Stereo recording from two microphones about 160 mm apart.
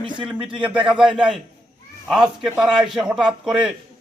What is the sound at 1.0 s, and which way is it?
A man's voice, 5° right (ahead or behind).